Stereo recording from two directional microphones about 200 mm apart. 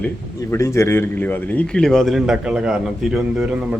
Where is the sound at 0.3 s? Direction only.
15° left (ahead or behind).